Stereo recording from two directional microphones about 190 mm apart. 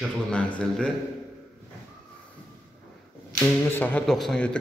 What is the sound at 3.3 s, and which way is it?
Speech, 10° left (ahead or behind).